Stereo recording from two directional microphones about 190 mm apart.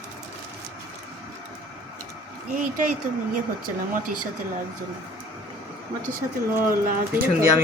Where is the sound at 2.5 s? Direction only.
45° right (ahead or behind).